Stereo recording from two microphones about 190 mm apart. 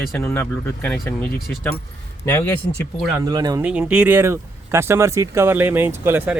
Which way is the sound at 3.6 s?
5° right (ahead or behind).